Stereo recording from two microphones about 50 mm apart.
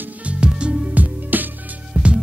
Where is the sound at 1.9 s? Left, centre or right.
Centre.